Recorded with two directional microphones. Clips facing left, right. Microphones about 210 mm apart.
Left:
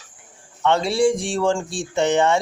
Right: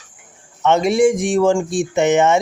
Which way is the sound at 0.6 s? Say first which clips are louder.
Right 4 dB; 20° right (ahead or behind).